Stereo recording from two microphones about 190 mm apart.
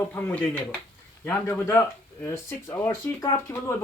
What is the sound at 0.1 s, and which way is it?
Speech, 10° left (ahead or behind).